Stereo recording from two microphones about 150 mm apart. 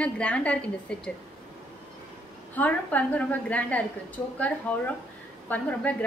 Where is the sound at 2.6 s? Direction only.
10° left (ahead or behind).